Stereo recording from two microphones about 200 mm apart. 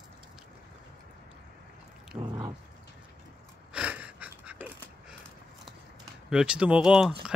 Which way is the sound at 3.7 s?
5° right (ahead or behind).